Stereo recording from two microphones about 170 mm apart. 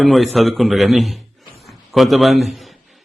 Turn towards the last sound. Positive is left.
turn(degrees=0)  # may be behind; listen again after turning